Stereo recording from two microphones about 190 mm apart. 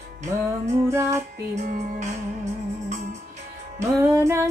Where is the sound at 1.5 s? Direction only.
40° right (ahead or behind).